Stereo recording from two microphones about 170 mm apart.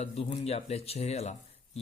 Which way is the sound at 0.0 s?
35° left (ahead or behind).